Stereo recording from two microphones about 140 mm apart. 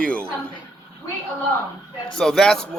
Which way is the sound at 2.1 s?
5° left (ahead or behind).